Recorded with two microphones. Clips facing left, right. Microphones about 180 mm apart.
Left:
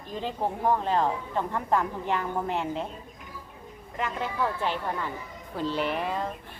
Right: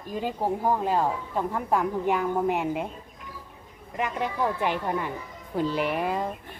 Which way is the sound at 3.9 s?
15° right (ahead or behind).